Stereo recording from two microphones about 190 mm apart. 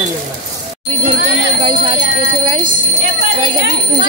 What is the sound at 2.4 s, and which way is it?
Speech, 30° right (ahead or behind).